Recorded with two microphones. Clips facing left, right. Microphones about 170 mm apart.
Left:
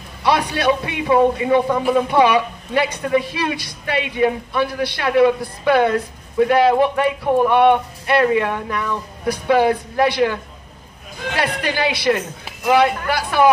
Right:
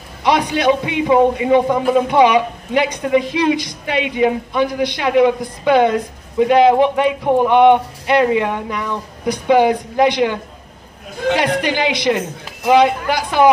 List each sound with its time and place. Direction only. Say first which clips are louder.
0.2 s speech: right 2 dB; 15° right (ahead or behind)
11.6 s a woman's voice: right 2 dB; 20° right (ahead or behind)